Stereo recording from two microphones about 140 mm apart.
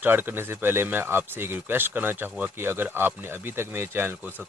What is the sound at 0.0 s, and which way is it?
A man's voice, 15° right (ahead or behind).